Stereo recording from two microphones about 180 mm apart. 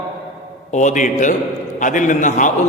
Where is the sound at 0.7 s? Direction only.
40° left (ahead or behind).